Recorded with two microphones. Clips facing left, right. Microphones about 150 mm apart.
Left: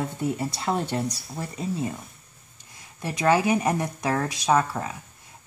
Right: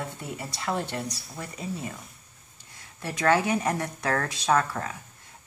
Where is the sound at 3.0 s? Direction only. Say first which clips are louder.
Left 2 dB; 15° left (ahead or behind).